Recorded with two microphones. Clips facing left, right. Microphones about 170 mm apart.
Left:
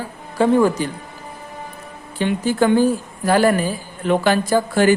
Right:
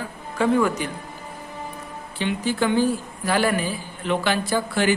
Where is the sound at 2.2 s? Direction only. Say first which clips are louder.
Left 5 dB; 45° left (ahead or behind).